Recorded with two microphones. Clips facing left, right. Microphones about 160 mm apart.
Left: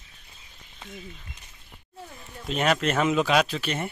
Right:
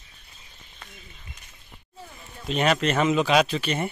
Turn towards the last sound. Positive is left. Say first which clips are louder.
# right 2 dB
turn(degrees=0)  # may be behind; listen again after turning